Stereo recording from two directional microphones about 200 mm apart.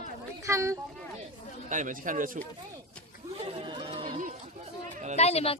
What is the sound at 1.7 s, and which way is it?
Speech, 40° right (ahead or behind).